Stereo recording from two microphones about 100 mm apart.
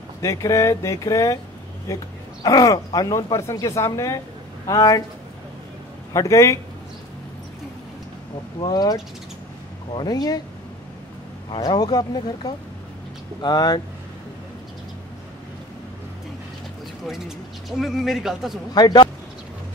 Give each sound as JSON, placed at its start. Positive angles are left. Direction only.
{"t": 0.2, "sound": "a man's voice", "side_deg": 30}
{"t": 6.1, "sound": "speech", "side_deg": 30}
{"t": 8.5, "sound": "speech", "side_deg": 50}
{"t": 10.0, "sound": "speech", "side_deg": 40}
{"t": 11.5, "sound": "speech", "side_deg": 45}
{"t": 17.6, "sound": "speech", "side_deg": 0}
{"t": 18.7, "sound": "speech", "side_deg": 45}